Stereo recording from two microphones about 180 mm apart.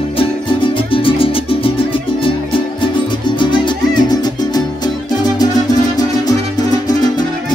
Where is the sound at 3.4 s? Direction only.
25° left (ahead or behind).